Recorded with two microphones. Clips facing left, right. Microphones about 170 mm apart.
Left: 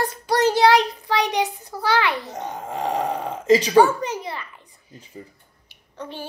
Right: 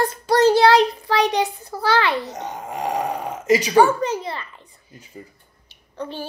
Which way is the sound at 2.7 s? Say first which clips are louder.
Even; 30° left (ahead or behind).